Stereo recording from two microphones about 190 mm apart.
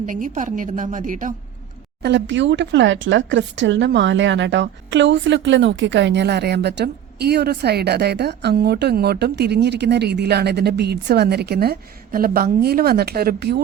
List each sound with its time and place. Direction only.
0.0 s a woman's voice: 40° right (ahead or behind)
2.0 s speech: 65° right (ahead or behind)